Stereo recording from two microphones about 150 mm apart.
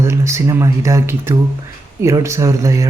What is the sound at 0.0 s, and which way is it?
Speech, 20° right (ahead or behind).